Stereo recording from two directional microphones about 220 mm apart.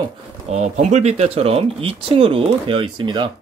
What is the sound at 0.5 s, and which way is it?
Speech, 30° right (ahead or behind).